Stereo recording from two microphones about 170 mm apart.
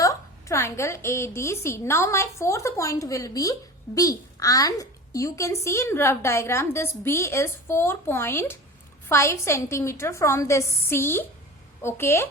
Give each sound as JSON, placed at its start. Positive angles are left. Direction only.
{"t": 0.0, "sound": "a woman's voice", "side_deg": 20}